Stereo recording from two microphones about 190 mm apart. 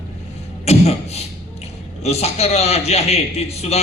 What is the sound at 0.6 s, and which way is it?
Beatboxing, 35° left (ahead or behind).